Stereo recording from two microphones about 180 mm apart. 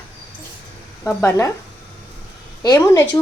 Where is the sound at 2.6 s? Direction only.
20° left (ahead or behind).